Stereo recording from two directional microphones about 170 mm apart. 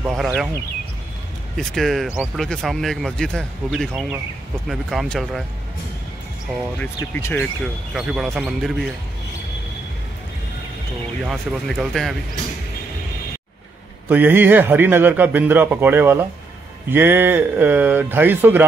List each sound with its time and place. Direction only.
0.0 s speech: centre (ahead or behind)
1.6 s speech: centre (ahead or behind)
7.0 s speech: 15° left (ahead or behind)
7.9 s speech: centre (ahead or behind)
11.2 s speech: centre (ahead or behind)
14.0 s a man's voice: 10° right (ahead or behind)